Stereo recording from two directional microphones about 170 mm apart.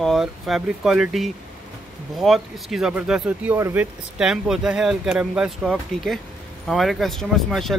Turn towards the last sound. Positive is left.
turn(degrees=0)  # may be behind; listen again after turning